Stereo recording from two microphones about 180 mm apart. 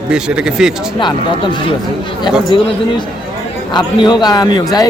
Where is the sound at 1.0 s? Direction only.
25° left (ahead or behind).